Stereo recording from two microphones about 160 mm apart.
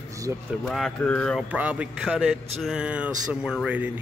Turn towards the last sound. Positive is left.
turn(degrees=-5)  # may be behind; listen again after turning